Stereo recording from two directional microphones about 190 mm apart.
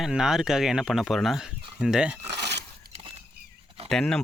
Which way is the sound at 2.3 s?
65° right (ahead or behind).